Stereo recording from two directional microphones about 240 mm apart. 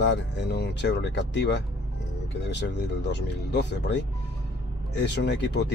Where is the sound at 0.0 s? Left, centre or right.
Left.